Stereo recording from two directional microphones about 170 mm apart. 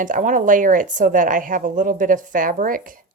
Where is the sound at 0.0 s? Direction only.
50° right (ahead or behind).